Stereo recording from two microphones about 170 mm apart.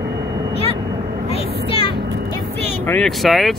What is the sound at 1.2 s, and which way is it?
Vehicle, 35° left (ahead or behind).